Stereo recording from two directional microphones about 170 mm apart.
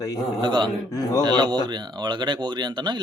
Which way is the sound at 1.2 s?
25° right (ahead or behind).